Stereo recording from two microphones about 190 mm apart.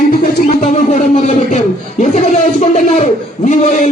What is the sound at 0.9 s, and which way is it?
A man's voice, 35° left (ahead or behind).